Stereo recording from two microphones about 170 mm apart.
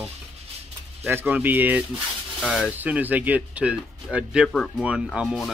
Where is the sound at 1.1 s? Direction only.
10° right (ahead or behind).